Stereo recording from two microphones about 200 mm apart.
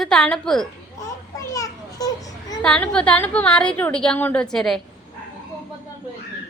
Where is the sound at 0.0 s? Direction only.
5° left (ahead or behind).